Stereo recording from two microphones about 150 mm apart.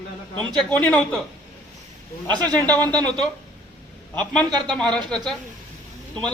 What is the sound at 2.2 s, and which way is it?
A man's voice, 10° left (ahead or behind).